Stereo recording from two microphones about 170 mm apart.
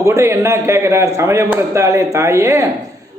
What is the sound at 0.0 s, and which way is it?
A man's voice, 15° right (ahead or behind).